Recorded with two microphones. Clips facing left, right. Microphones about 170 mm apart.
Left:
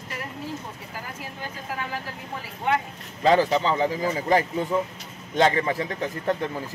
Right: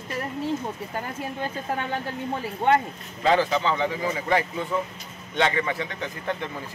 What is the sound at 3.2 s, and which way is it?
A man's voice, 35° left (ahead or behind).